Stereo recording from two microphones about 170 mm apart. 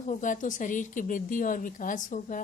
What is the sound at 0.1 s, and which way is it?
Speech, 50° left (ahead or behind).